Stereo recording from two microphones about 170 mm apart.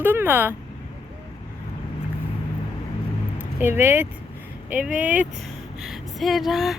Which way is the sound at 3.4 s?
10° right (ahead or behind).